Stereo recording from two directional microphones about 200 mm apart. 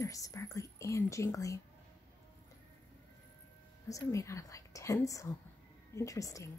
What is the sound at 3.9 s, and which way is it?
Speech, 15° left (ahead or behind).